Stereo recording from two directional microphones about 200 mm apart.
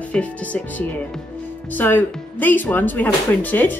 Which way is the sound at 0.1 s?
5° left (ahead or behind).